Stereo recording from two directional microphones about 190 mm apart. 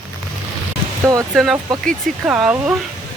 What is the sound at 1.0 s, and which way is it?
Speech, 15° right (ahead or behind).